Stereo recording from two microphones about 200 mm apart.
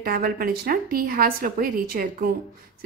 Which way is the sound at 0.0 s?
50° right (ahead or behind).